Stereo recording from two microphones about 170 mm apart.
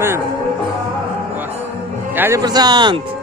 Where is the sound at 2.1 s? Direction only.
10° right (ahead or behind).